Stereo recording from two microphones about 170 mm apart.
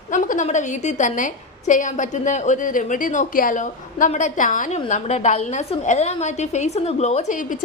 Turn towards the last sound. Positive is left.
turn(degrees=40)  # may be behind; listen again after turning